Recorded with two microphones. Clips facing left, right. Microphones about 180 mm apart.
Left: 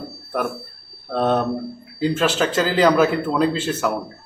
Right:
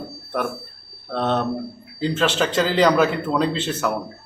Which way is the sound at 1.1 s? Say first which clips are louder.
Left 2 dB; 10° left (ahead or behind).